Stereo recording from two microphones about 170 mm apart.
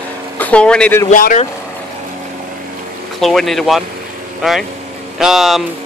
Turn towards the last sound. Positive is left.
turn(degrees=0)  # may be behind; listen again after turning